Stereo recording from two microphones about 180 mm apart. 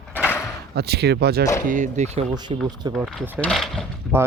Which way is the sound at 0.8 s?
60° right (ahead or behind).